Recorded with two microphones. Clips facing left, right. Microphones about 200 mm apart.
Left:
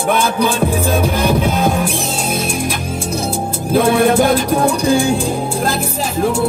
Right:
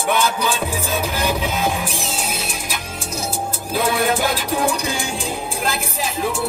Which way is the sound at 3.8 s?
30° left (ahead or behind).